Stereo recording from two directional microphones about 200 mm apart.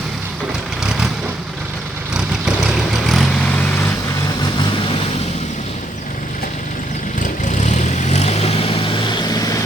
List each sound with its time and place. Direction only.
2.9 s vehicle: centre (ahead or behind)
7.2 s vehicle: 40° left (ahead or behind)